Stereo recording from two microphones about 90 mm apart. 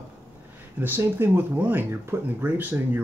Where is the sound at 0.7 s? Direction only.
25° right (ahead or behind).